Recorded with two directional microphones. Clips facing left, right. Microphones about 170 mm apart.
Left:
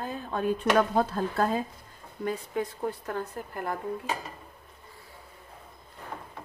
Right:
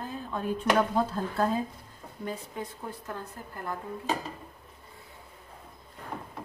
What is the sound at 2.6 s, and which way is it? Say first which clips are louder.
Speech: left 7 dB; 70° left (ahead or behind).